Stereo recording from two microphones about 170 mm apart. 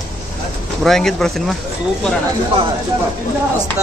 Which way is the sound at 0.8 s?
Centre (ahead or behind).